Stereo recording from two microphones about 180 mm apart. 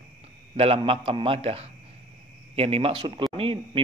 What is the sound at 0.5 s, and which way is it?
A man's voice, 30° right (ahead or behind).